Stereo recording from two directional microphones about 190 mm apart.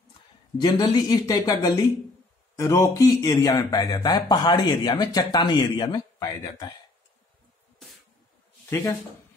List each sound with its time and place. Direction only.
0.6 s speech: 20° left (ahead or behind)
8.6 s speech: 15° left (ahead or behind)